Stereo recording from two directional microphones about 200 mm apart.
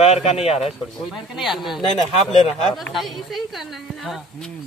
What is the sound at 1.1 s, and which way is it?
Speech, centre (ahead or behind).